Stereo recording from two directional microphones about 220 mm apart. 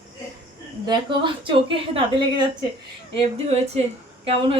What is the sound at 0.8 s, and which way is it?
A woman's voice, 20° right (ahead or behind).